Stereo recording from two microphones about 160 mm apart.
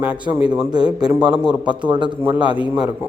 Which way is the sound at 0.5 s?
25° right (ahead or behind).